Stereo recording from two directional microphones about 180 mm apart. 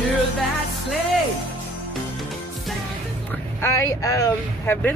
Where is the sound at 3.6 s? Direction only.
15° left (ahead or behind).